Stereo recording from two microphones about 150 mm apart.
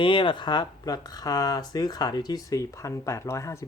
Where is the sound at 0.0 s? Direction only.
35° left (ahead or behind).